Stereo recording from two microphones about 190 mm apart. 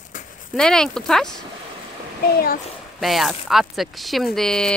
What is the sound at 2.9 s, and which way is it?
Speech, centre (ahead or behind).